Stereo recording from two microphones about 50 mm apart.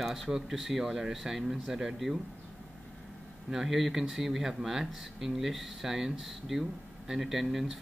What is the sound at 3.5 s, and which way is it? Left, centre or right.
Speech, centre.